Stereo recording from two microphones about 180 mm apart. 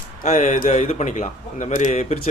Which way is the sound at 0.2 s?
40° left (ahead or behind).